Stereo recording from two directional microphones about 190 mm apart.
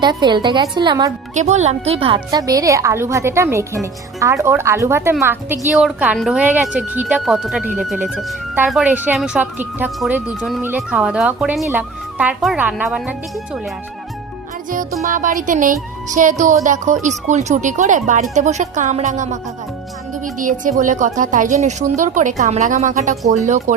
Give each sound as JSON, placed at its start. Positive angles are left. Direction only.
{"t": 0.0, "sound": "a woman's voice", "side_deg": -25}
{"t": 1.4, "sound": "a woman's voice", "side_deg": -35}
{"t": 15.1, "sound": "speech", "side_deg": -45}
{"t": 20.4, "sound": "speech", "side_deg": -45}